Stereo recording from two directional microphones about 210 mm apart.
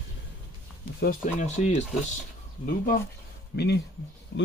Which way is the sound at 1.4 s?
30° left (ahead or behind).